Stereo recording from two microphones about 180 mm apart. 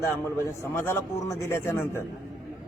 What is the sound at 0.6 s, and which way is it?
A man's voice, 15° left (ahead or behind).